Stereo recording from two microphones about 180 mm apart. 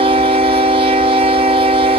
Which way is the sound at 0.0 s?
30° right (ahead or behind).